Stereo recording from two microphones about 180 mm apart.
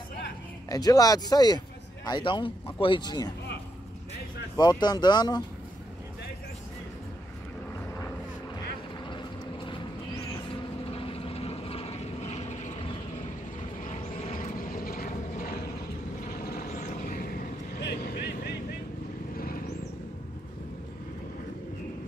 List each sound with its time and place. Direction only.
0.7 s speech: 20° left (ahead or behind)
4.6 s speech: 25° left (ahead or behind)
9.0 s vehicle: 25° left (ahead or behind)
10.9 s vehicle: 30° left (ahead or behind); by 17.3 s 50° left (ahead or behind)
17.7 s vehicle: 65° left (ahead or behind)
19.3 s a sound: 55° left (ahead or behind)